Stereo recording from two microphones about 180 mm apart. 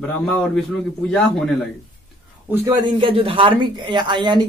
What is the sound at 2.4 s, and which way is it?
Speech, 10° right (ahead or behind).